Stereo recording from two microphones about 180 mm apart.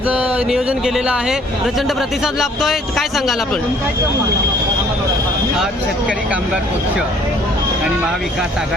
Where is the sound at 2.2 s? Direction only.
Centre (ahead or behind).